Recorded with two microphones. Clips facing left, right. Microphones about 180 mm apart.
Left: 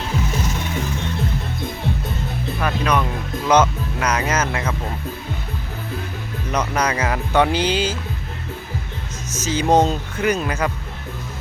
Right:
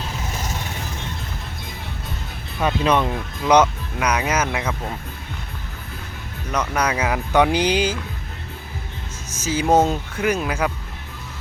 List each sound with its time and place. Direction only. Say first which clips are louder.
2.6 s speech: right 2 dB; 25° right (ahead or behind)
3.5 s speech: right 1 dB; 15° right (ahead or behind)
6.5 s speech: left 1 dB; centre (ahead or behind)
9.3 s speech: left 1 dB; 10° right (ahead or behind)